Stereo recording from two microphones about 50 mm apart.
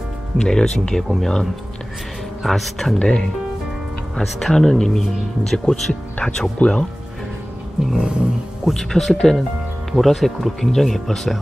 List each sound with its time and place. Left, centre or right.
0.4 s speech: centre
3.0 s speech: left
4.4 s speech: centre
6.2 s speech: centre
8.0 s music: centre
8.6 s speech: centre